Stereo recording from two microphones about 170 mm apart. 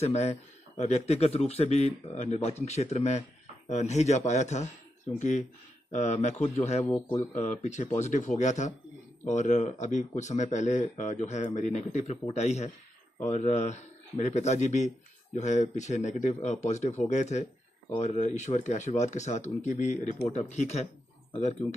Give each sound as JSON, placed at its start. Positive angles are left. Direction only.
{"t": 0.0, "sound": "a man's voice", "side_deg": 40}
{"t": 5.9, "sound": "a man's voice", "side_deg": 40}
{"t": 6.9, "sound": "speech", "side_deg": 20}
{"t": 7.3, "sound": "a man's voice", "side_deg": 40}